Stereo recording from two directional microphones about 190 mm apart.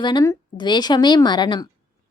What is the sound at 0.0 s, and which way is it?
Speech, 20° left (ahead or behind).